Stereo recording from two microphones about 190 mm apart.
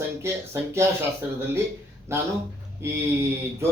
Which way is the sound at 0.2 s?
15° right (ahead or behind).